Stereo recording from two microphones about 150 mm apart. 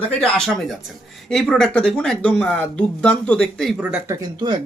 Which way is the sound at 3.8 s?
10° right (ahead or behind).